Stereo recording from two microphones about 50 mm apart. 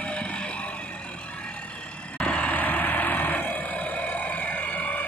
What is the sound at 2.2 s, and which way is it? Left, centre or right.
Vehicle, left.